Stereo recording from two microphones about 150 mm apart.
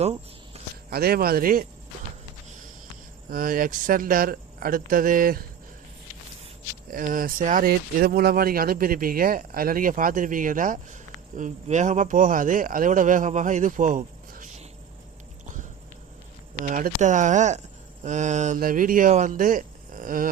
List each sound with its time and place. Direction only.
0.0 s cricket: 45° right (ahead or behind)
0.9 s speech: 90° right; by 1.6 s 70° right (ahead or behind)
3.2 s speech: 70° right (ahead or behind)
6.9 s speech: 65° right (ahead or behind)
16.6 s speech: 60° right (ahead or behind)